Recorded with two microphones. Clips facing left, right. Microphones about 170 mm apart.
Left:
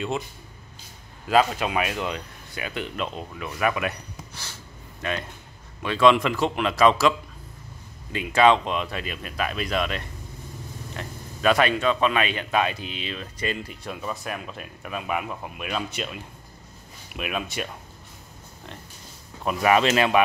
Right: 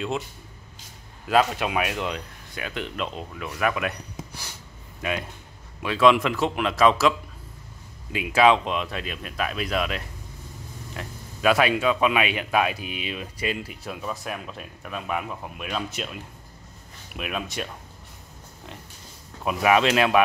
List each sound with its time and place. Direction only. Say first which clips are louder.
1.3 s speech: left 1 dB; centre (ahead or behind)
4.2 s snort: right 3 dB; 15° right (ahead or behind)
5.0 s speech: right 1 dB; 10° right (ahead or behind)
19.4 s speech: even; centre (ahead or behind)